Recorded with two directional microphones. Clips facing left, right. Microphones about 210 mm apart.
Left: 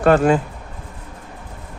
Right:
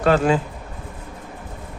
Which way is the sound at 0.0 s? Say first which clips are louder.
Left 3 dB; 50° left (ahead or behind).